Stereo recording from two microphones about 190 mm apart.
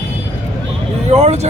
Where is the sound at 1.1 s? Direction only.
35° right (ahead or behind).